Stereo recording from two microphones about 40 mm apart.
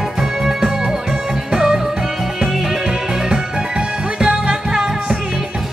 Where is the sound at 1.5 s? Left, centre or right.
Centre.